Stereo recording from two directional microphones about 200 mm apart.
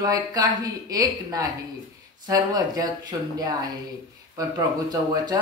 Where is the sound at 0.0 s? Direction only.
20° right (ahead or behind).